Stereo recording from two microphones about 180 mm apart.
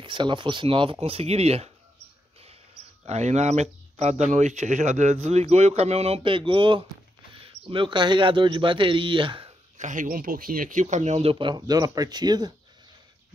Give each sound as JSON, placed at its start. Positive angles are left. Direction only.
{"t": 0.0, "sound": "speech", "side_deg": -25}
{"t": 3.1, "sound": "a man's voice", "side_deg": -40}
{"t": 9.8, "sound": "a man's voice", "side_deg": -45}